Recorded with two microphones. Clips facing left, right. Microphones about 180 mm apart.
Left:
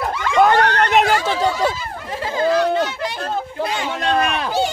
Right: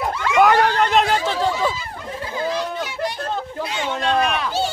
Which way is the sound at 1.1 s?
80° left.